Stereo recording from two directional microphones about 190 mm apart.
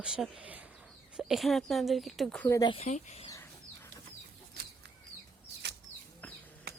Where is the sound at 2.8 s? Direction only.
35° left (ahead or behind).